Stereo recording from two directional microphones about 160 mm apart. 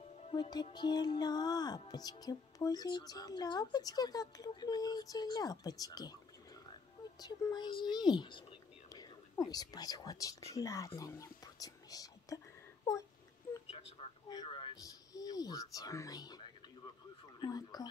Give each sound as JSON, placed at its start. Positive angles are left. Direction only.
{"t": 0.3, "sound": "music", "side_deg": 25}
{"t": 0.7, "sound": "speech", "side_deg": 25}
{"t": 7.2, "sound": "speech", "side_deg": 25}
{"t": 11.0, "sound": "whispering", "side_deg": 20}
{"t": 14.3, "sound": "a sound", "side_deg": 30}
{"t": 17.4, "sound": "speech", "side_deg": 25}